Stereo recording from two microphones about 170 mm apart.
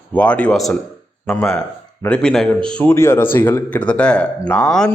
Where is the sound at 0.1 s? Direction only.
5° left (ahead or behind).